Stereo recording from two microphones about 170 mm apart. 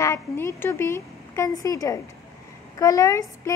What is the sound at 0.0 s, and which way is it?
Speech, 15° left (ahead or behind).